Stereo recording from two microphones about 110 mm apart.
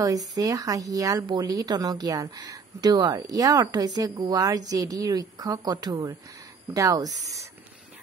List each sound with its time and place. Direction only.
0.0 s speech: 35° right (ahead or behind)